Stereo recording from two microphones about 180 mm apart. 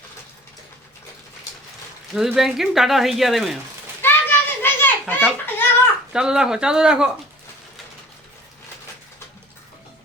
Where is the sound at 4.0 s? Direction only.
10° left (ahead or behind).